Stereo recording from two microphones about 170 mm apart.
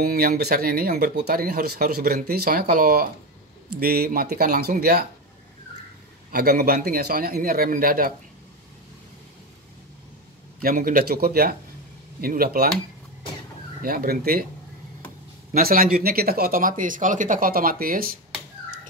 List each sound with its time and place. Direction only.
0.0 s speech: 60° right (ahead or behind)
6.3 s speech: 60° right (ahead or behind)
10.6 s speech: 60° right (ahead or behind)
13.8 s speech: 60° right (ahead or behind)
15.5 s speech: 60° right (ahead or behind)